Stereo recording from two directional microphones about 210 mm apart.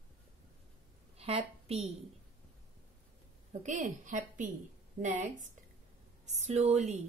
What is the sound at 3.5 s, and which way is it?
Speech, 35° right (ahead or behind).